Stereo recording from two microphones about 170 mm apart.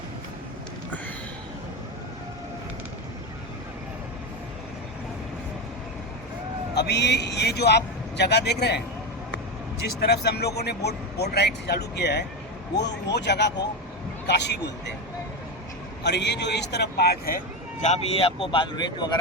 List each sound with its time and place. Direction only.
6.7 s speech: 85° left
10.0 s speech: 70° left (ahead or behind)
13.1 s speech: 90° left
16.0 s speech: 90° left; by 17.8 s 60° left (ahead or behind)
17.8 s speech: 40° left (ahead or behind)